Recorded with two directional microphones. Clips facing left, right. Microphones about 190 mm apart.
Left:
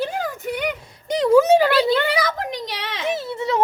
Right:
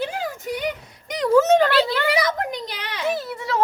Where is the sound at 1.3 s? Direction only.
10° left (ahead or behind).